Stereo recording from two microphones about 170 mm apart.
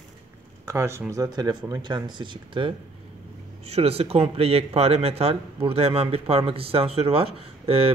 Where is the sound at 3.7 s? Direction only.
35° right (ahead or behind).